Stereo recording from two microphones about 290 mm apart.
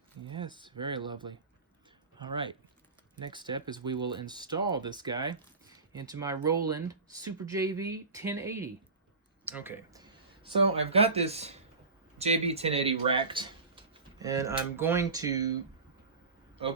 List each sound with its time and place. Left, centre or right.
0.3 s speech: centre